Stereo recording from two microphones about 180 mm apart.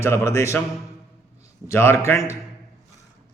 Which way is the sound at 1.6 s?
15° left (ahead or behind).